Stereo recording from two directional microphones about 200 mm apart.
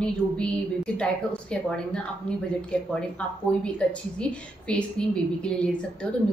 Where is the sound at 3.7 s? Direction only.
5° left (ahead or behind).